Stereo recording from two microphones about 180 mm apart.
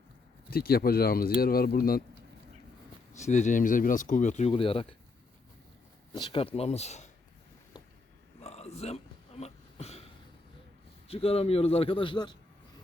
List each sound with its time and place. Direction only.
0.5 s speech: 55° left (ahead or behind)
3.1 s speech: 40° left (ahead or behind)
6.1 s a man's voice: 25° left (ahead or behind)
8.4 s a sound: 35° left (ahead or behind)
11.1 s a man's voice: 35° left (ahead or behind)